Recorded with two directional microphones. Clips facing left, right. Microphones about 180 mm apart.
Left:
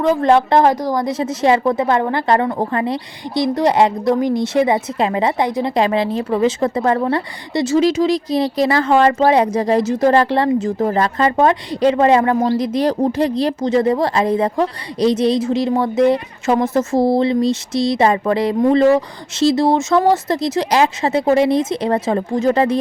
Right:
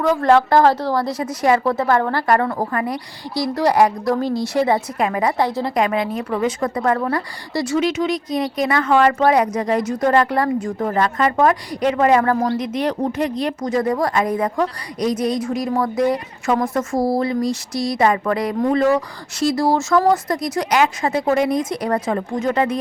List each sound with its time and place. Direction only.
0.0 s a woman's voice: 20° left (ahead or behind)